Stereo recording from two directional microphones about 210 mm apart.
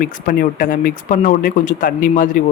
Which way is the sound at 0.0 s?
40° left (ahead or behind).